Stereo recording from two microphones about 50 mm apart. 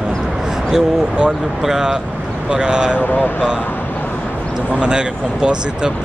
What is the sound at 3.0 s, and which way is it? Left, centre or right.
Speech, left.